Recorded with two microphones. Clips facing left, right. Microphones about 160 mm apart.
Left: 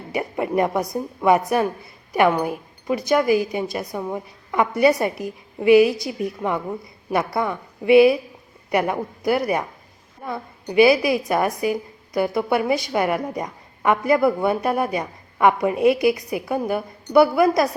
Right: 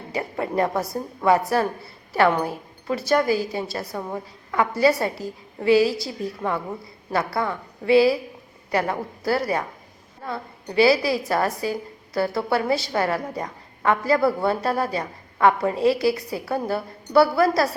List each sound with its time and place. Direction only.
0.1 s a woman's voice: 15° left (ahead or behind)